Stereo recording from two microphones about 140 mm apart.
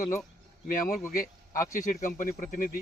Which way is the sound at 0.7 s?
75° left (ahead or behind).